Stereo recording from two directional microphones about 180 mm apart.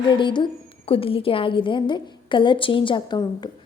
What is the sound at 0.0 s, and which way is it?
A woman's voice, 25° left (ahead or behind).